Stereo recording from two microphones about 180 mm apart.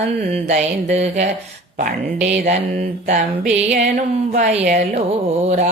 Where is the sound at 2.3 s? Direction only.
40° right (ahead or behind).